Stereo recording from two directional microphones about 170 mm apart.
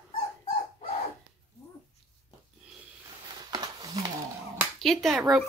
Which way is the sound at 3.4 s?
25° right (ahead or behind).